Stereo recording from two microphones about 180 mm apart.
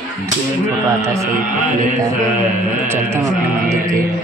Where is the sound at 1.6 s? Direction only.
45° right (ahead or behind).